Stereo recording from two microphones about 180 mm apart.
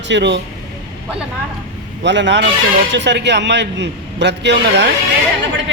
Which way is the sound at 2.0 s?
80° right.